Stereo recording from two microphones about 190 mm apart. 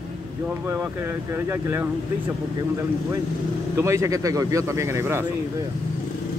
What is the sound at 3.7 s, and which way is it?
Speech, 15° right (ahead or behind).